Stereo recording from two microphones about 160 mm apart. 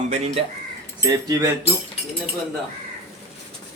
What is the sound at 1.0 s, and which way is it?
Speech, 20° right (ahead or behind).